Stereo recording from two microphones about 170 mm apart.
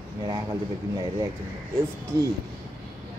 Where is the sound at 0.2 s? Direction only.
25° right (ahead or behind).